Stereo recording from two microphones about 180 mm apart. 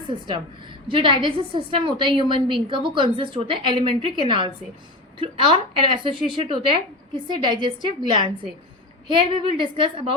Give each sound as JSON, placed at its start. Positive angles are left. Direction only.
{"t": 0.9, "sound": "a woman's voice", "side_deg": -30}